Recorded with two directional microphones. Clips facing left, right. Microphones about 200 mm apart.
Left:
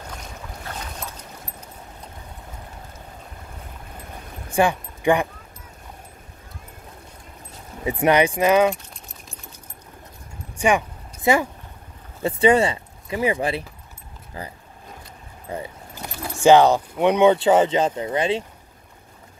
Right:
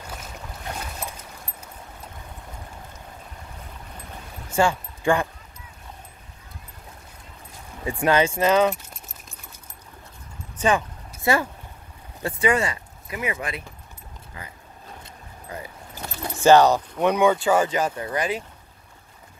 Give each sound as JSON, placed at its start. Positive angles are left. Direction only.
{"t": 4.5, "sound": "a sound", "side_deg": 15}
{"t": 7.8, "sound": "speech", "side_deg": 20}
{"t": 10.6, "sound": "speech", "side_deg": 15}
{"t": 15.5, "sound": "keys jangling", "side_deg": 25}
{"t": 16.2, "sound": "speech", "side_deg": 15}